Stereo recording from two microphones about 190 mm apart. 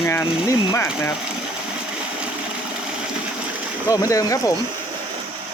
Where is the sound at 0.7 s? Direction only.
10° left (ahead or behind).